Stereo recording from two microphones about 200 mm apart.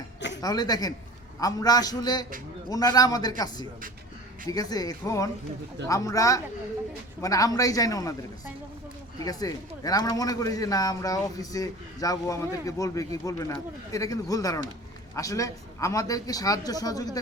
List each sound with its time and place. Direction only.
0.4 s a man's voice: 20° left (ahead or behind)
9.2 s speech: 20° left (ahead or behind)